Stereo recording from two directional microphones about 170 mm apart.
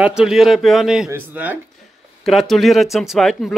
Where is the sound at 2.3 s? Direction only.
Centre (ahead or behind).